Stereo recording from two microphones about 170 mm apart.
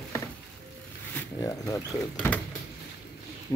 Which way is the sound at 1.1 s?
15° left (ahead or behind).